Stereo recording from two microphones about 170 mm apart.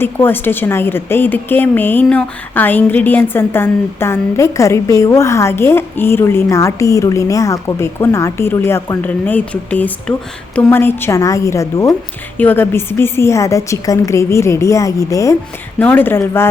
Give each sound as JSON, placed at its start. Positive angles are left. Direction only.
{"t": 0.0, "sound": "a woman's voice", "side_deg": 10}